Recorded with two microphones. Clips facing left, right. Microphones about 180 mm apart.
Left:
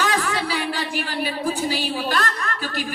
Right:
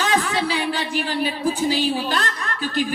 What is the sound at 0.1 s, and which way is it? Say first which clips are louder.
Speech: right 2 dB; 25° right (ahead or behind).